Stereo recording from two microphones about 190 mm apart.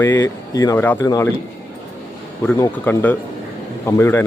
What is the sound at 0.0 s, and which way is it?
Speech, 15° left (ahead or behind).